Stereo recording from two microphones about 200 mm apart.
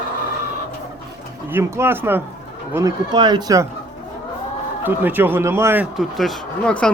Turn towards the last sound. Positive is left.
turn(degrees=5)  # may be behind; listen again after turning